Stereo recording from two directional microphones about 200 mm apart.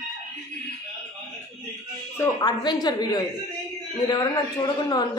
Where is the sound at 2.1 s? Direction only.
15° left (ahead or behind).